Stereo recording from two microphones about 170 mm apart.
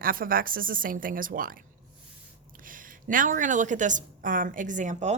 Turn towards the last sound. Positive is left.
turn(degrees=-45)  # may be behind; listen again after turning